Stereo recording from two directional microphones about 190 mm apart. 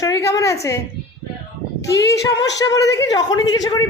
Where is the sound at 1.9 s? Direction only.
15° left (ahead or behind).